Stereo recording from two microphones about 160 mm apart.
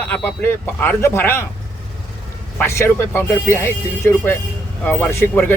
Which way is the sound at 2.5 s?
15° left (ahead or behind).